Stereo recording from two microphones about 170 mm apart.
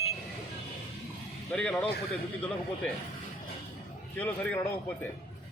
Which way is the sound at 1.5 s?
5° left (ahead or behind).